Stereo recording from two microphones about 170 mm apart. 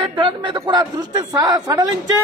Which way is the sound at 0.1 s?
25° right (ahead or behind).